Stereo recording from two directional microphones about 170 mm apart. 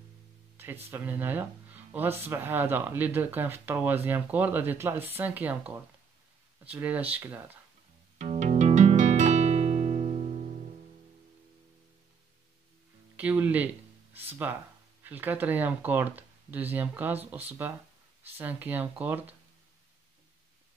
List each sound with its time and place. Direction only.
0.8 s speech: 10° right (ahead or behind)
8.2 s music: 45° right (ahead or behind)
13.1 s speech: 10° right (ahead or behind)